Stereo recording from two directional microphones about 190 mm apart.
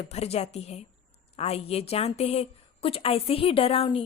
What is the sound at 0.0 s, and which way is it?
A woman's voice, 35° left (ahead or behind).